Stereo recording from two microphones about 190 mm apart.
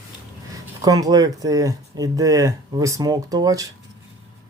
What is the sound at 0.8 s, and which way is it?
Speech, 20° right (ahead or behind).